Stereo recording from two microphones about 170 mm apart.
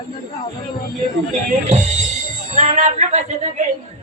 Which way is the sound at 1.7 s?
45° right (ahead or behind).